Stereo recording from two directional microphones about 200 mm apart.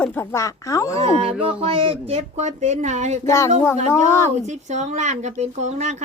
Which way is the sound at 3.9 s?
10° left (ahead or behind).